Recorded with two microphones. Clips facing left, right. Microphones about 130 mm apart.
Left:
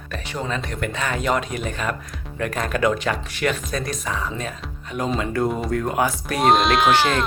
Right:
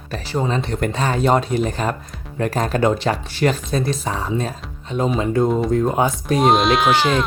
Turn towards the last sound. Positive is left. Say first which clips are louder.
# right 1 dB
turn(degrees=0)  # may be behind; listen again after turning